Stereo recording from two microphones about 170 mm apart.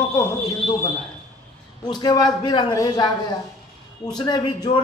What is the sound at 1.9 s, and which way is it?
A man's voice, 25° left (ahead or behind).